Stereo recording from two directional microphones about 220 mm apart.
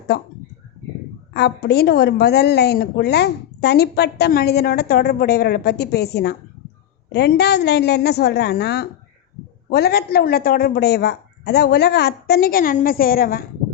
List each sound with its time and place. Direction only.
0.1 s a woman's voice: 45° left (ahead or behind)
1.3 s a woman's voice: 50° left (ahead or behind)